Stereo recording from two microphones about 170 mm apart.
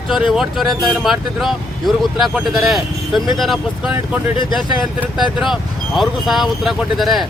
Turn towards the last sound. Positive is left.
turn(degrees=0)  # may be behind; listen again after turning